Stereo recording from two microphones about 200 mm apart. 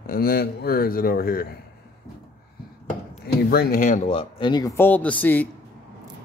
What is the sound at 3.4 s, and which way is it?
Speech, 50° left (ahead or behind).